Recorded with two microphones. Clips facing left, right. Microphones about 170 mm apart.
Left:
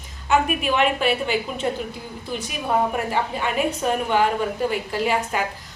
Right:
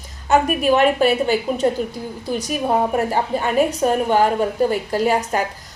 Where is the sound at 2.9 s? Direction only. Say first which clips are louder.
Right 5 dB; 40° right (ahead or behind).